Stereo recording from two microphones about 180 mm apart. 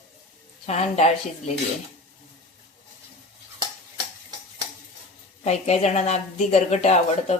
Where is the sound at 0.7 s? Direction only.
35° left (ahead or behind).